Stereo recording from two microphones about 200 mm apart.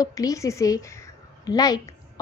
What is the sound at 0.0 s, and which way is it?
A woman's voice, 15° left (ahead or behind).